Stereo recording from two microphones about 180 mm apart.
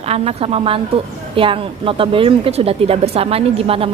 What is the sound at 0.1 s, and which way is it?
A woman's voice, 35° right (ahead or behind).